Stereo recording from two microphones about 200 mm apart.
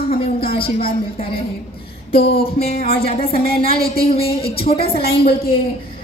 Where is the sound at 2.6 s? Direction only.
50° left (ahead or behind).